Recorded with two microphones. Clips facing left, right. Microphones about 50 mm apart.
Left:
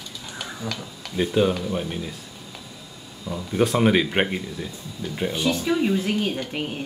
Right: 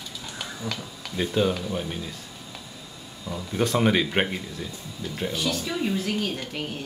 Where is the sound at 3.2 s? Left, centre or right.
Centre; by 6.8 s left.